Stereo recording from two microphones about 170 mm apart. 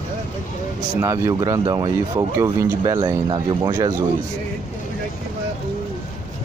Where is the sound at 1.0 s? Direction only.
20° right (ahead or behind).